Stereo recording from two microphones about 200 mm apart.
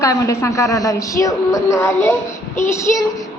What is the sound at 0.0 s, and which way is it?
Child singing, 15° left (ahead or behind).